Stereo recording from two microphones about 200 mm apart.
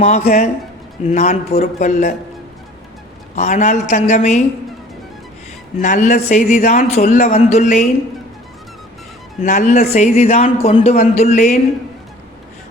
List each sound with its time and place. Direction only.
0.0 s a man's voice: 35° left (ahead or behind)
3.3 s a man's voice: 35° left (ahead or behind)
5.8 s a man's voice: 40° left (ahead or behind)
9.4 s a man's voice: 35° left (ahead or behind)